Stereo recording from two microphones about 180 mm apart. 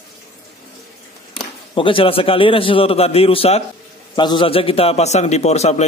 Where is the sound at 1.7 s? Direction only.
30° left (ahead or behind).